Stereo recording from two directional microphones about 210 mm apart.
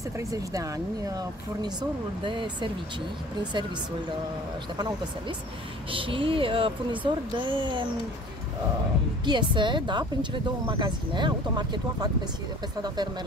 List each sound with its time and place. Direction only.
0.3 s speech: 15° right (ahead or behind)
5.9 s speech: 25° right (ahead or behind)
9.2 s speech: 20° right (ahead or behind)